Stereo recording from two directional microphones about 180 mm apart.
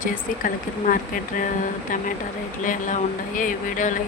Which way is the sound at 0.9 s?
45° left (ahead or behind).